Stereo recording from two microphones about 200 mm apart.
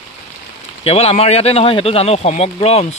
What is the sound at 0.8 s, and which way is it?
Speech, 30° left (ahead or behind).